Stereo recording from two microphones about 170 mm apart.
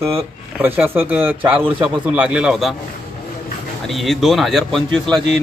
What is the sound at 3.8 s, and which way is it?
Speech, centre (ahead or behind).